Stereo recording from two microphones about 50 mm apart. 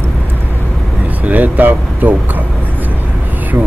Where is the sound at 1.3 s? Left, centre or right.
Right.